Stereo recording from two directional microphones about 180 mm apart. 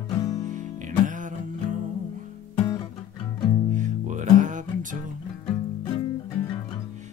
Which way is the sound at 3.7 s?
45° right (ahead or behind).